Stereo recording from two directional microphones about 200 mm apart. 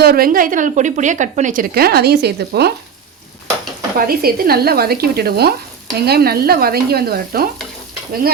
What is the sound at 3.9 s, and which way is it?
A woman's voice, 50° right (ahead or behind).